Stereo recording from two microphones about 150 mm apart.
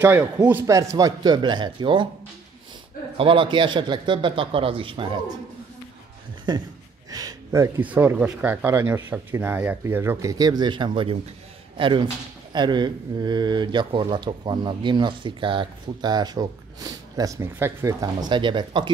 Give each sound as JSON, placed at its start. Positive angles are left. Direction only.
{"t": 0.0, "sound": "speech", "side_deg": -15}
{"t": 3.2, "sound": "a man's voice", "side_deg": -35}
{"t": 6.5, "sound": "speech", "side_deg": -30}
{"t": 7.1, "sound": "a sound", "side_deg": -25}
{"t": 7.8, "sound": "a man's voice", "side_deg": -10}
{"t": 18.0, "sound": "a man's voice", "side_deg": -30}